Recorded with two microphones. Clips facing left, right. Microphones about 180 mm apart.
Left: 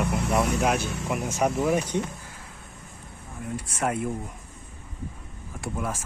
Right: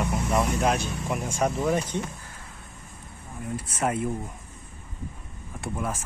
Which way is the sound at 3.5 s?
Centre (ahead or behind).